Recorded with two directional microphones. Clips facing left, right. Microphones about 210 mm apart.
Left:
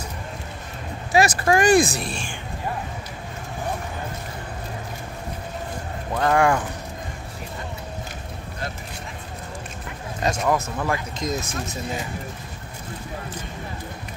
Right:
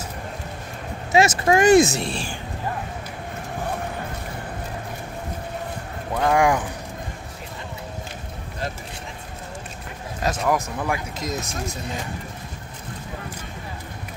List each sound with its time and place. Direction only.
1.1 s speech: 25° right (ahead or behind)
6.1 s speech: 10° right (ahead or behind)
10.2 s speech: 5° right (ahead or behind)